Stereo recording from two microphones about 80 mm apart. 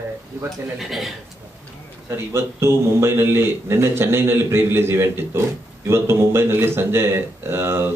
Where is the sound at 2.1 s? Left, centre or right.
Right.